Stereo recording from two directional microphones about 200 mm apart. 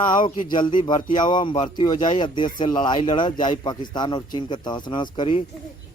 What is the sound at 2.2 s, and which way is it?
Speech, 25° left (ahead or behind).